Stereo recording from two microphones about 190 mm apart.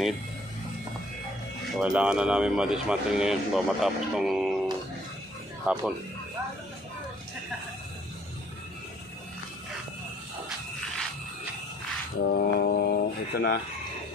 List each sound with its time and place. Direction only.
1.7 s speech: 5° right (ahead or behind)
5.7 s speech: 5° right (ahead or behind)
12.2 s speech: 55° left (ahead or behind)